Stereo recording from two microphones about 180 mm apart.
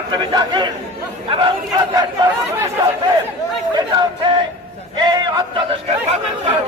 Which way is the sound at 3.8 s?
25° right (ahead or behind).